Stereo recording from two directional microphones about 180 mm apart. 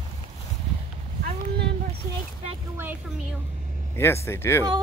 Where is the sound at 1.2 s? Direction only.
60° right (ahead or behind).